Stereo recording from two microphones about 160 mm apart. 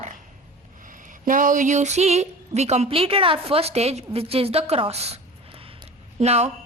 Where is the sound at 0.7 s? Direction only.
55° right (ahead or behind).